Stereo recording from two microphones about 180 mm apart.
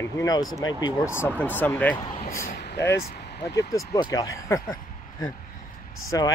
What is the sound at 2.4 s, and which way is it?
Speech, 60° left (ahead or behind).